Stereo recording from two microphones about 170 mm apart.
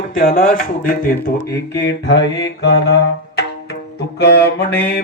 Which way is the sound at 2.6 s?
85° left.